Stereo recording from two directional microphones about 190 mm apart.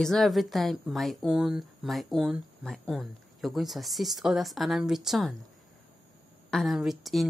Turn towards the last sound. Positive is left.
turn(degrees=0)  # may be behind; listen again after turning